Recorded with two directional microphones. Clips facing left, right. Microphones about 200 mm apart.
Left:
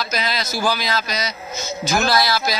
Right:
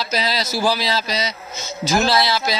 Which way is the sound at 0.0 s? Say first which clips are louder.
Right 2 dB; 35° right (ahead or behind).